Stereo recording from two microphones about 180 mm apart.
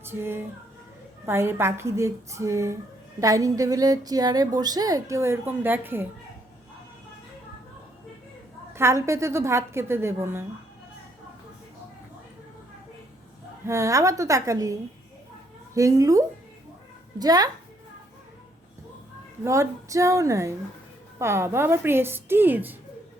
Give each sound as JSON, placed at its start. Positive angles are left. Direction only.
{"t": 0.0, "sound": "female singing", "side_deg": -15}
{"t": 1.2, "sound": "a woman's voice", "side_deg": -15}
{"t": 8.7, "sound": "a woman's voice", "side_deg": -15}
{"t": 13.7, "sound": "a woman's voice", "side_deg": -15}
{"t": 19.5, "sound": "a woman's voice", "side_deg": -15}